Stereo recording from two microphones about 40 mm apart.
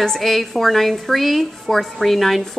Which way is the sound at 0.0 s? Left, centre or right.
Centre.